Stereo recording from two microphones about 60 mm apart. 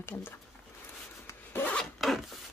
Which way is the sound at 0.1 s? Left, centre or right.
Left.